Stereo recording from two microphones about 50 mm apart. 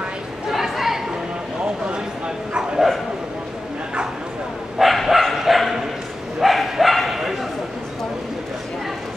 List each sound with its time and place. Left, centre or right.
0.5 s chatter: centre
4.7 s bow-wow: centre